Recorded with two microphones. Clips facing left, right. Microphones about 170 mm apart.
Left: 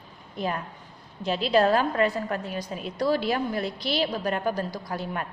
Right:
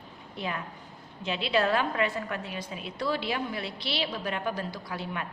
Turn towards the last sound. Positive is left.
turn(degrees=40)  # may be behind; listen again after turning